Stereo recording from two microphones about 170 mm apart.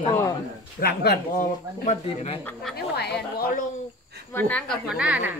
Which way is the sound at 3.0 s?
75° left (ahead or behind).